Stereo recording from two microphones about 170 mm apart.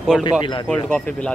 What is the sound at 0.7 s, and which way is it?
Speech, 10° left (ahead or behind).